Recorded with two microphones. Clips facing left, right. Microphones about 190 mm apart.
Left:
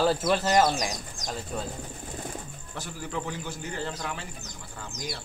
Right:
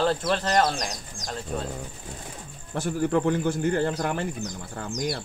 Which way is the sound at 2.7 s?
50° right (ahead or behind).